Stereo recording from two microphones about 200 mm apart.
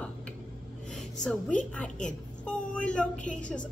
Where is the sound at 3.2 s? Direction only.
40° left (ahead or behind).